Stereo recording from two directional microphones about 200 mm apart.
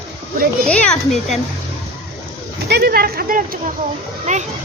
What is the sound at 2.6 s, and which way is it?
Speech, 55° right (ahead or behind).